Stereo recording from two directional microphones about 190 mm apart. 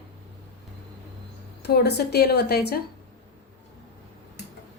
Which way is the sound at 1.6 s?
60° left (ahead or behind).